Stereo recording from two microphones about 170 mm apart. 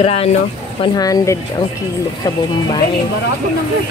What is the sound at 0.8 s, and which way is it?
Speech, 20° left (ahead or behind).